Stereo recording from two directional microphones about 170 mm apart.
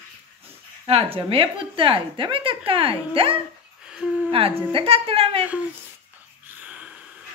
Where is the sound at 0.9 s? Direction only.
35° right (ahead or behind).